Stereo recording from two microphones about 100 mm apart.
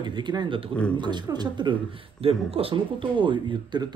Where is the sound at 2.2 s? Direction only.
75° right (ahead or behind); by 3.8 s 55° right (ahead or behind).